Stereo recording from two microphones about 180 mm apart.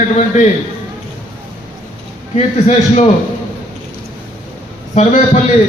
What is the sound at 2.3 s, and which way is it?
Speech, 40° left (ahead or behind).